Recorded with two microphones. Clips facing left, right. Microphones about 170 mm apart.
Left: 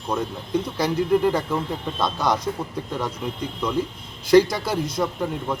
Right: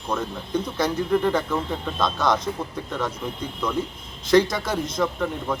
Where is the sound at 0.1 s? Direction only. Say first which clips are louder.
Left 1 dB; 5° left (ahead or behind).